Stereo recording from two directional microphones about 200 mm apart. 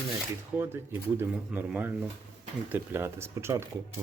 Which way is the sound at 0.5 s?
10° right (ahead or behind).